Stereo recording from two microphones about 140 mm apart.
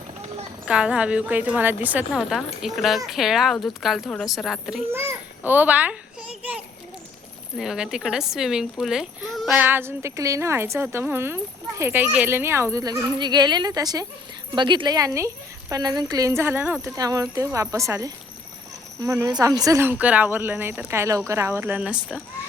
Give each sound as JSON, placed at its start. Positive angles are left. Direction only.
{"t": 0.6, "sound": "a child's voice", "side_deg": -5}
{"t": 4.9, "sound": "babbling", "side_deg": -15}
{"t": 7.5, "sound": "a child's voice", "side_deg": -5}
{"t": 9.6, "sound": "speech", "side_deg": -15}
{"t": 16.8, "sound": "speech", "side_deg": -25}